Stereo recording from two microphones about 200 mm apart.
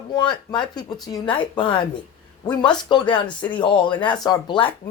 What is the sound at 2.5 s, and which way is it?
Speech, 5° left (ahead or behind).